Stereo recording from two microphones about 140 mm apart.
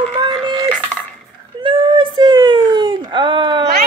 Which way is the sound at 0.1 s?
35° right (ahead or behind).